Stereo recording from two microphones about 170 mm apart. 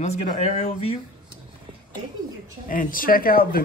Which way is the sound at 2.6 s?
55° left (ahead or behind).